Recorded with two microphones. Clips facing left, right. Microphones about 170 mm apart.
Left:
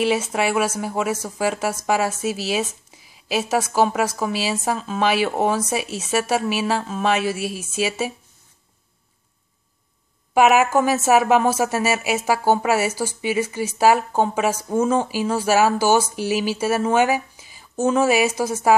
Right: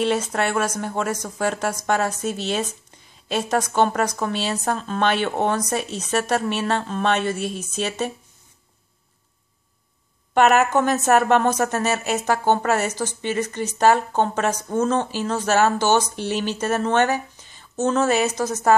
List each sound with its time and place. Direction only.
0.0 s a woman's voice: 5° left (ahead or behind)
10.3 s a woman's voice: 5° left (ahead or behind)